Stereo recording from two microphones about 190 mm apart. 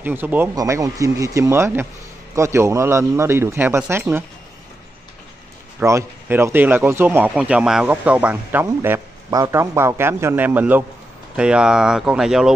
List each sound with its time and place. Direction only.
0.0 s speech: 10° right (ahead or behind)
5.8 s speech: 10° right (ahead or behind)